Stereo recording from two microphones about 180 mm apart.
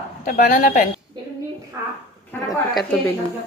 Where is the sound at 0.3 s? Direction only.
45° left (ahead or behind).